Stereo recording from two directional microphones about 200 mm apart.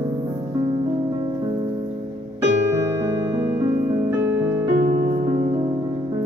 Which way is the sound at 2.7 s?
15° right (ahead or behind).